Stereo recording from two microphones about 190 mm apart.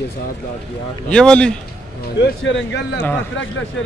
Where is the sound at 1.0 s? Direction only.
5° left (ahead or behind).